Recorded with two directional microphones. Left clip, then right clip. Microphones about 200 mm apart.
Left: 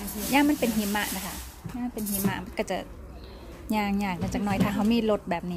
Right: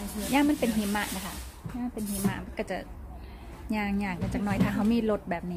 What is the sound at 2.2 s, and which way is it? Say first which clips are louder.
A woman's voice: left 4 dB; 20° left (ahead or behind).